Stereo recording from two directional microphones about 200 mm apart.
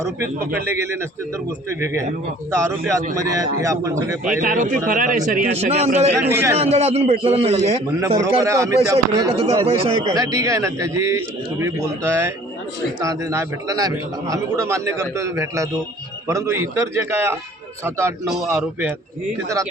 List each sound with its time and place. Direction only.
0.0 s a man's voice: 10° right (ahead or behind)
4.2 s a man's voice: 40° right (ahead or behind)
6.3 s a man's voice: 10° right (ahead or behind)
6.6 s a man's voice: 30° right (ahead or behind)
7.9 s a man's voice: 15° right (ahead or behind)
9.3 s speech: 30° right (ahead or behind)
10.2 s a man's voice: 15° right (ahead or behind)
18.3 s a man's voice: 5° right (ahead or behind)